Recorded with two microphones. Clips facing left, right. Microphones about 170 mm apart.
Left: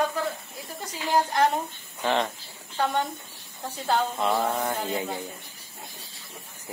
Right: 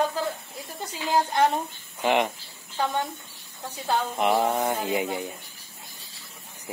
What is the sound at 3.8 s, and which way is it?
Speech, 15° right (ahead or behind).